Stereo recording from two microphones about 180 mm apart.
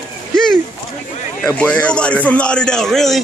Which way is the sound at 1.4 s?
5° left (ahead or behind).